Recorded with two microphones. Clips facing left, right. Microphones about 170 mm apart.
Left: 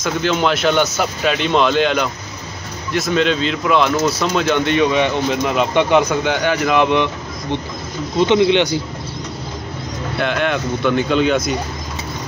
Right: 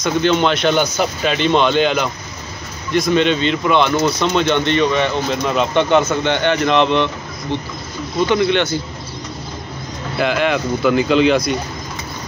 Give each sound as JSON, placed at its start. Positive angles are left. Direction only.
{"t": 0.0, "sound": "speech", "side_deg": 5}
{"t": 8.3, "sound": "speech", "side_deg": 15}
{"t": 10.1, "sound": "speech", "side_deg": 0}